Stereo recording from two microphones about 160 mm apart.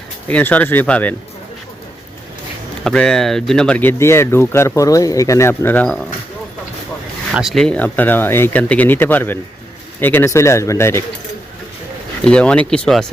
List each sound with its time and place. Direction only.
0.3 s speech: 10° left (ahead or behind)
2.8 s speech: 5° left (ahead or behind)
7.3 s speech: centre (ahead or behind); by 11.0 s 15° left (ahead or behind)
12.2 s speech: 5° left (ahead or behind)